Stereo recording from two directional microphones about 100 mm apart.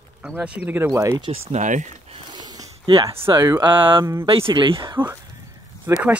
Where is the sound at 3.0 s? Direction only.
25° right (ahead or behind).